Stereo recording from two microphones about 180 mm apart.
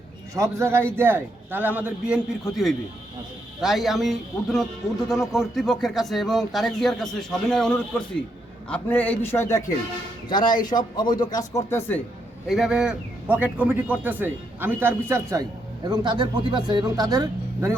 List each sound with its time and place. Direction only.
0.3 s a man's voice: 15° right (ahead or behind)
3.6 s a man's voice: centre (ahead or behind)
10.2 s speech: 25° left (ahead or behind)
12.5 s a man's voice: centre (ahead or behind)